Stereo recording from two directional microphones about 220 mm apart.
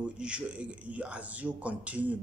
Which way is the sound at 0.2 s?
5° right (ahead or behind).